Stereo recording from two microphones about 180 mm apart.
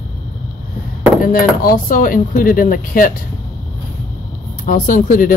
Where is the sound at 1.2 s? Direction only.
55° left (ahead or behind).